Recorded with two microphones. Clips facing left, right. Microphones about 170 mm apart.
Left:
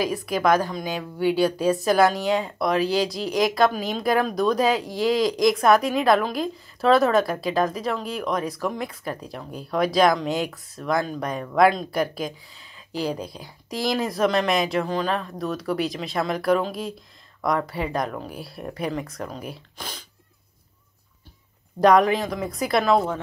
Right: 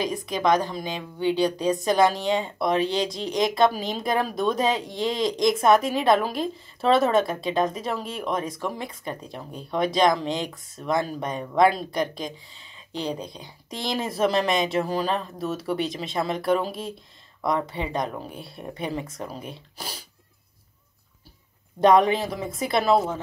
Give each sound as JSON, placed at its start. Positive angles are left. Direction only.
{"t": 0.0, "sound": "a woman's voice", "side_deg": 5}
{"t": 17.6, "sound": "speech", "side_deg": -25}
{"t": 18.2, "sound": "a woman's voice", "side_deg": 0}
{"t": 19.8, "sound": "sneeze", "side_deg": -10}
{"t": 21.7, "sound": "a woman's voice", "side_deg": 0}